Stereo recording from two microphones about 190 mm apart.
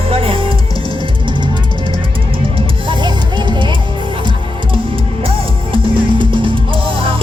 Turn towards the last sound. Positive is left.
turn(degrees=-25)  # may be behind; listen again after turning